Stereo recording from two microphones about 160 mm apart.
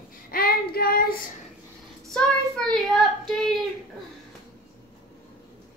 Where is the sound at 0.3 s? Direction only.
65° left (ahead or behind).